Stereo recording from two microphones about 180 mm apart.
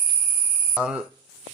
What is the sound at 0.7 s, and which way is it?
Speech, 5° right (ahead or behind).